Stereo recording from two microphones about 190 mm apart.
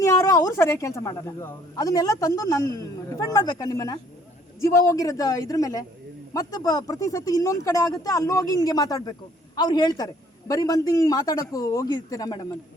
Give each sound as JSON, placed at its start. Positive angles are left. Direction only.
{"t": 0.0, "sound": "speech", "side_deg": 15}